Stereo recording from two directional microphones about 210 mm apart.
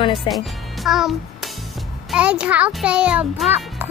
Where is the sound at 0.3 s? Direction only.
Centre (ahead or behind).